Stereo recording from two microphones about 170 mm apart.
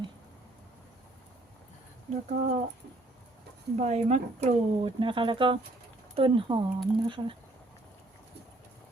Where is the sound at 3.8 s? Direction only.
40° right (ahead or behind).